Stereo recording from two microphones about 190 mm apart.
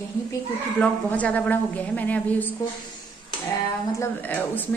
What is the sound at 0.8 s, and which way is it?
A woman's voice, 5° left (ahead or behind).